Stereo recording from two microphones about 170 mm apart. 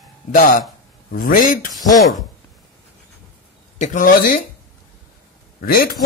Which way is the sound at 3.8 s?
50° left (ahead or behind).